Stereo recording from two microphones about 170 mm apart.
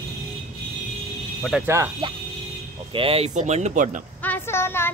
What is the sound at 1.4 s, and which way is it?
Speech, 10° right (ahead or behind).